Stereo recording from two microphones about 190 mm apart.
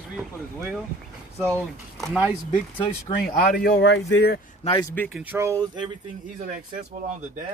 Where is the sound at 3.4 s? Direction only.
50° left (ahead or behind).